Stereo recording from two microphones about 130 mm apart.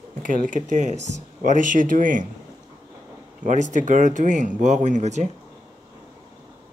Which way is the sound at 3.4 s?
70° right (ahead or behind).